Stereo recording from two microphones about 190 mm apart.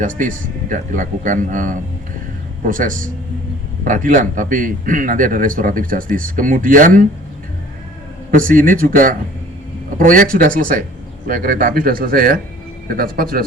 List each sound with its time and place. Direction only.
0.0 s a man's voice: 45° right (ahead or behind)
8.3 s a man's voice: 45° right (ahead or behind)